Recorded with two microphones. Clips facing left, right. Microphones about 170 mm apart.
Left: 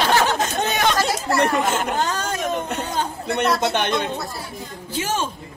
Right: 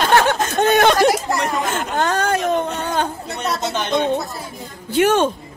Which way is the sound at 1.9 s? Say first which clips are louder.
Right 5 dB; 60° right (ahead or behind).